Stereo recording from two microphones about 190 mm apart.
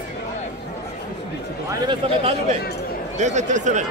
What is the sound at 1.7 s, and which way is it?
Speech, 25° right (ahead or behind).